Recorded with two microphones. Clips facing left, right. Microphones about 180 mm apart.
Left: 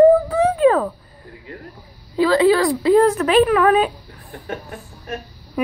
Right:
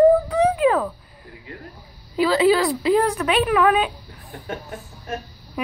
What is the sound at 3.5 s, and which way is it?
Speech, 10° right (ahead or behind).